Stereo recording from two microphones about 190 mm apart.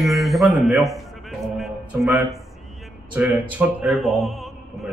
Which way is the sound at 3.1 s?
10° right (ahead or behind).